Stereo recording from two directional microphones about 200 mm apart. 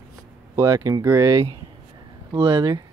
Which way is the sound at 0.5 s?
15° right (ahead or behind).